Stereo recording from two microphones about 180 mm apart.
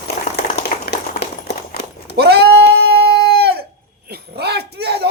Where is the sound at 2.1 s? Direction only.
65° right (ahead or behind).